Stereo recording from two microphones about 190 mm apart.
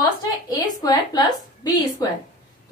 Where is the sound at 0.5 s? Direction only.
20° left (ahead or behind).